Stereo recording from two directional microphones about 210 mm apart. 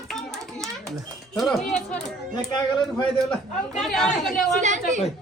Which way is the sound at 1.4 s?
Centre (ahead or behind).